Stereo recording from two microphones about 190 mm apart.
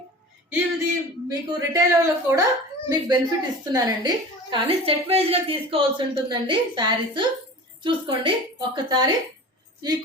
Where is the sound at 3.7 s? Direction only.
20° right (ahead or behind).